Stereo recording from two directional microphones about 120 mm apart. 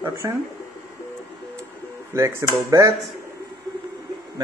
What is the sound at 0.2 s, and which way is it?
Speech, 25° right (ahead or behind).